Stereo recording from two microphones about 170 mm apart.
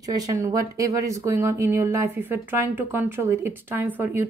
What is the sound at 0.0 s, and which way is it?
Speech, 20° right (ahead or behind).